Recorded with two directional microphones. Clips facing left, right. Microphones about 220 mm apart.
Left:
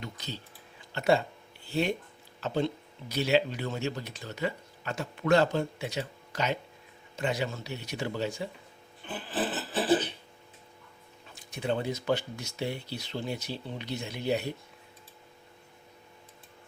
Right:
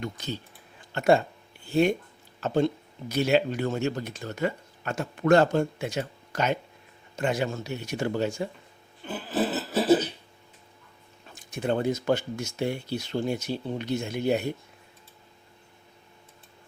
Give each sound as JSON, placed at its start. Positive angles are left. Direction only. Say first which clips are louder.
{"t": 0.0, "sound": "speech", "louder": "right 6 dB", "side_deg": -50}
{"t": 9.0, "sound": "a sound", "louder": "right 5 dB", "side_deg": -40}
{"t": 11.3, "sound": "speech", "louder": "right 4 dB", "side_deg": -45}